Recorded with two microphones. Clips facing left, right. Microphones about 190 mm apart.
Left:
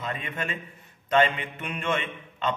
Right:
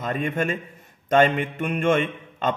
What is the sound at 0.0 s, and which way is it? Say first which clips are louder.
A man's voice: right 8 dB; 45° right (ahead or behind).